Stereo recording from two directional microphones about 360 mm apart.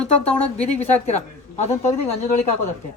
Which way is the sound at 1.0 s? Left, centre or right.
Centre.